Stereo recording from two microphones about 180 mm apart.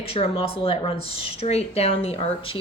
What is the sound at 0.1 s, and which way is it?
Speech, 30° left (ahead or behind).